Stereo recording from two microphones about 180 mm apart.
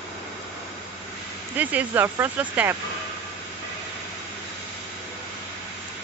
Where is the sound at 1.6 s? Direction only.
10° right (ahead or behind).